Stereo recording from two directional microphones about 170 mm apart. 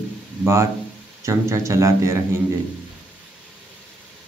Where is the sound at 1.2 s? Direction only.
15° right (ahead or behind).